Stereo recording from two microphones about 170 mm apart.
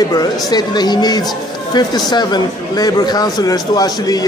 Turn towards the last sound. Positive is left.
turn(degrees=20)  # may be behind; listen again after turning